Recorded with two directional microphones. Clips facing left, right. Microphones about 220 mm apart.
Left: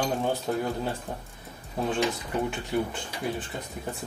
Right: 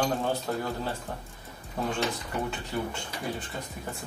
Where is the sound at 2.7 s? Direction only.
15° left (ahead or behind).